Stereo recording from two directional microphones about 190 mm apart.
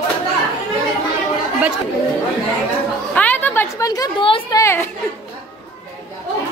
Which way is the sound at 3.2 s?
10° left (ahead or behind).